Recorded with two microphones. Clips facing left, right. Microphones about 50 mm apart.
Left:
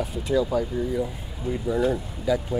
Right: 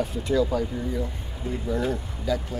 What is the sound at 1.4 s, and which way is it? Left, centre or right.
Speech, right.